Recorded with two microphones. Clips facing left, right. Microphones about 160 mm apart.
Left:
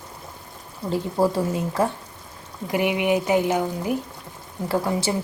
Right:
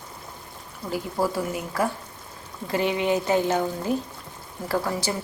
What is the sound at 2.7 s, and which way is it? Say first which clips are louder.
A woman's voice: left 2 dB; 15° left (ahead or behind).